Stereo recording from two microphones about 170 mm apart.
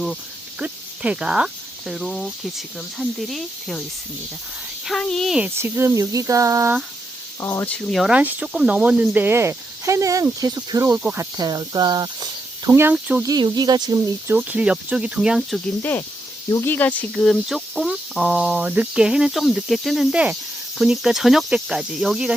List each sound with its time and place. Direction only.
0.6 s speech: 5° right (ahead or behind)
4.9 s speech: 5° left (ahead or behind)
5.5 s speech: 15° right (ahead or behind)
7.4 s speech: 15° left (ahead or behind)
7.9 s speech: centre (ahead or behind)
11.3 s speech: 20° right (ahead or behind)
13.2 s speech: 25° right (ahead or behind); by 15.6 s centre (ahead or behind)
15.8 s speech: 10° left (ahead or behind)